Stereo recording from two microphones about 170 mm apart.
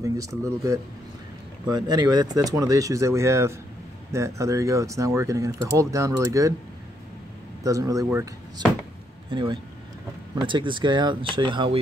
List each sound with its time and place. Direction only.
0.0 s speech: 20° right (ahead or behind)
7.6 s speech: 20° right (ahead or behind)